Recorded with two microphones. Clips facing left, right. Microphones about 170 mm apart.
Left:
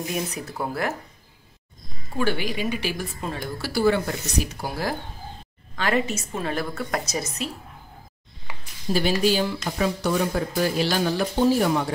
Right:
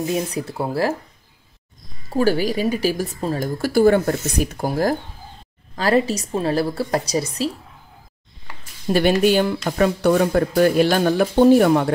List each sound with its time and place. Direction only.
0.1 s speech: 30° right (ahead or behind)
2.1 s a woman's voice: 40° right (ahead or behind)
8.8 s speech: 60° right (ahead or behind)